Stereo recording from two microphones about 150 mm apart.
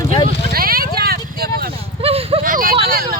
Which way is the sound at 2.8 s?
75° right (ahead or behind).